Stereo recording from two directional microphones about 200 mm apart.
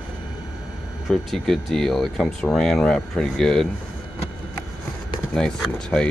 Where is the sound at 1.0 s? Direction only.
Centre (ahead or behind).